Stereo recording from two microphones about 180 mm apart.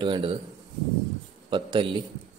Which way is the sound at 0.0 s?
30° right (ahead or behind).